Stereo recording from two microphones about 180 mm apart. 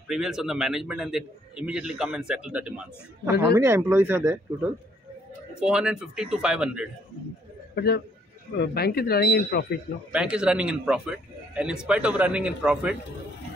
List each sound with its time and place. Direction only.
0.1 s a man's voice: 5° right (ahead or behind)
5.6 s a man's voice: 5° right (ahead or behind)
7.7 s a man's voice: 65° left (ahead or behind)
10.1 s a man's voice: 5° right (ahead or behind)